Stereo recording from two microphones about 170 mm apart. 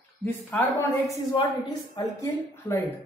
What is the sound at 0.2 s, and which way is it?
Speech, 10° left (ahead or behind).